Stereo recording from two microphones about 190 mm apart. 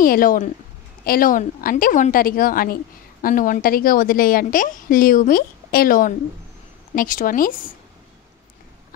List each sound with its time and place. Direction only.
0.0 s a woman's voice: 50° left (ahead or behind)